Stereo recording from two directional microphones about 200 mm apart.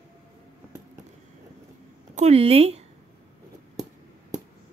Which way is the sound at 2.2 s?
30° right (ahead or behind).